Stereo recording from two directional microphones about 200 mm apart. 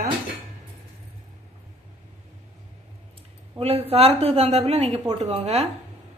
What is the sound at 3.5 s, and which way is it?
Speech, 30° right (ahead or behind).